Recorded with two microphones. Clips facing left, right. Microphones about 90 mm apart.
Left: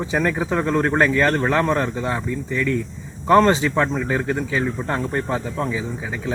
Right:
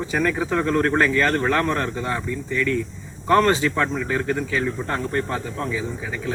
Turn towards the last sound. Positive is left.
turn(degrees=20)  # may be behind; listen again after turning